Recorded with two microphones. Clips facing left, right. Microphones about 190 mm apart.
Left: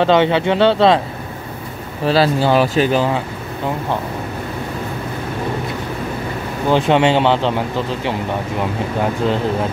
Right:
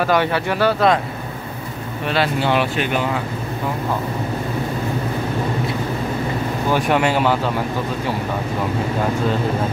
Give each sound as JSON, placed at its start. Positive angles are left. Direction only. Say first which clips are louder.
{"t": 0.0, "sound": "speech", "louder": "left 5 dB", "side_deg": 20}
{"t": 2.0, "sound": "speech", "louder": "left 5 dB", "side_deg": 35}
{"t": 6.7, "sound": "speech", "louder": "left 5 dB", "side_deg": 25}